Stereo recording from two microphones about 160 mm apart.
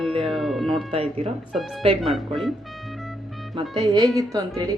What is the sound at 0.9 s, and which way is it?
Speech, 40° right (ahead or behind).